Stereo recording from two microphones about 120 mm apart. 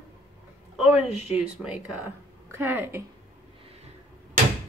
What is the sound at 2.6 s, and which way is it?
Speech, 20° right (ahead or behind).